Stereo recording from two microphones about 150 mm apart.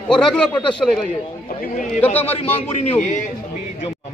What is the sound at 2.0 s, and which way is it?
Speech, 10° left (ahead or behind).